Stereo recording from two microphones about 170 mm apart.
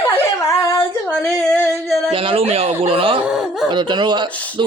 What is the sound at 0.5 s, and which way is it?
Female singing, 20° left (ahead or behind).